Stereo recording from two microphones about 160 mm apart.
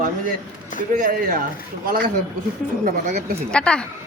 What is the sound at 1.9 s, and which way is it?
Speech, 70° right (ahead or behind).